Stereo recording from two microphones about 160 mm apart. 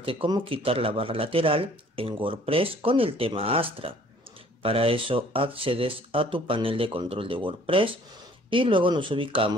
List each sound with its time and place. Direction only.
0.0 s speech: 35° right (ahead or behind)